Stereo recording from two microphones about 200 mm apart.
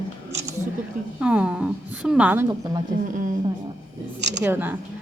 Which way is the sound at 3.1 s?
40° right (ahead or behind).